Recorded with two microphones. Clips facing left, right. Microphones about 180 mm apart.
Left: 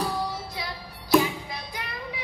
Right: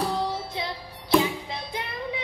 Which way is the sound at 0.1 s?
25° right (ahead or behind).